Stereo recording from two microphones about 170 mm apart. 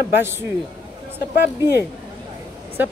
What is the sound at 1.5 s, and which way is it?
Speech, 15° right (ahead or behind).